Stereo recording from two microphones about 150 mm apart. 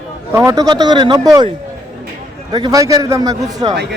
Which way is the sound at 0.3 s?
20° right (ahead or behind).